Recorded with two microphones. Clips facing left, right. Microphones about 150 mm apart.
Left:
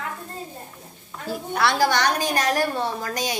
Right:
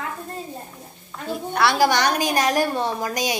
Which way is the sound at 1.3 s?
Centre (ahead or behind).